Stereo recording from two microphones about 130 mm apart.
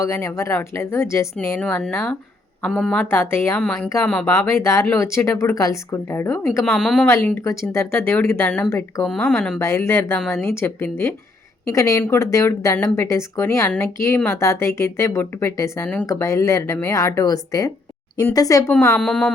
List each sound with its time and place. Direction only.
0.0 s speech: 20° left (ahead or behind)
1.5 s speech: 5° left (ahead or behind)
3.0 s speech: 20° left (ahead or behind)
3.6 s speech: 5° left (ahead or behind)
4.3 s speech: 20° left (ahead or behind)
6.7 s speech: 5° left (ahead or behind)
7.1 s speech: 20° left (ahead or behind)
9.6 s speech: 20° left (ahead or behind)
10.2 s speech: 5° left (ahead or behind)
10.4 s speech: 20° left (ahead or behind)
18.7 s speech: 15° left (ahead or behind)